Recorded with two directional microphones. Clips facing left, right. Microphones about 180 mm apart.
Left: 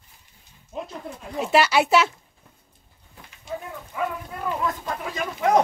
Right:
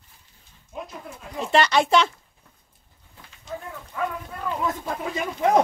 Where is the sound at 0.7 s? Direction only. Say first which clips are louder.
Left 3 dB; 25° left (ahead or behind).